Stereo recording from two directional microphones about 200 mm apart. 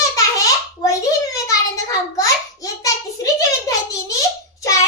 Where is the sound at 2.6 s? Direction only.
15° left (ahead or behind).